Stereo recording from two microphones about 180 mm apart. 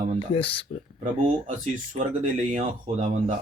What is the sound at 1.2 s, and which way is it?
Speech, 40° right (ahead or behind).